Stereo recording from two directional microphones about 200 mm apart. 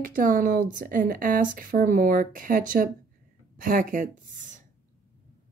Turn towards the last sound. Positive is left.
turn(degrees=-40)  # may be behind; listen again after turning